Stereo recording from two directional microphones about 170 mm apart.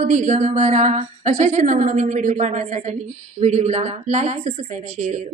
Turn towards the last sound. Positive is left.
turn(degrees=-45)  # may be behind; listen again after turning